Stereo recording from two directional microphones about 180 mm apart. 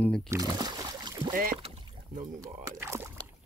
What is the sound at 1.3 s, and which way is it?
Speech, 50° right (ahead or behind).